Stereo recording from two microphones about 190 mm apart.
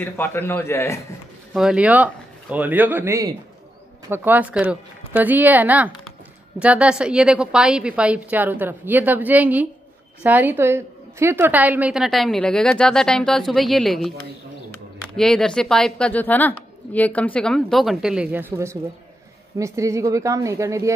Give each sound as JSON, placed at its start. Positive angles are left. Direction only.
{"t": 0.0, "sound": "a man's voice", "side_deg": 10}
{"t": 1.5, "sound": "a woman's voice", "side_deg": -5}
{"t": 15.1, "sound": "a woman's voice", "side_deg": 0}